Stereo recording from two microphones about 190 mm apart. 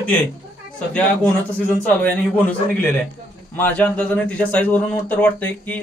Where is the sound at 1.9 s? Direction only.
10° left (ahead or behind).